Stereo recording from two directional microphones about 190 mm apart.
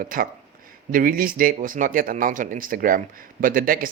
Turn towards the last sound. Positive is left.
turn(degrees=-50)  # may be behind; listen again after turning